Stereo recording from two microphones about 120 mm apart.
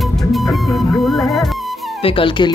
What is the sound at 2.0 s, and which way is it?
Speech, 45° left (ahead or behind).